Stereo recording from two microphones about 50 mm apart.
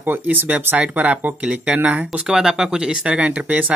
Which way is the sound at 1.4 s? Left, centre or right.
Right.